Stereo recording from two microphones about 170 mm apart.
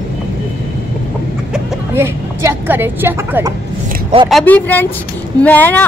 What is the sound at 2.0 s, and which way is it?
A woman's voice, 15° right (ahead or behind).